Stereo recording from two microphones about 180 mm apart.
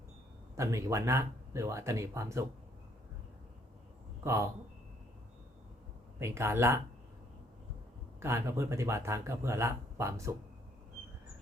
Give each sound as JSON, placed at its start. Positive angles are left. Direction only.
{"t": 0.5, "sound": "speech", "side_deg": -15}
{"t": 4.2, "sound": "speech", "side_deg": -15}
{"t": 6.1, "sound": "speech", "side_deg": -15}
{"t": 8.2, "sound": "speech", "side_deg": -15}